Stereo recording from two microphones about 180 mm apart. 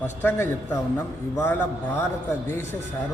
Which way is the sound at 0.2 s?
10° left (ahead or behind).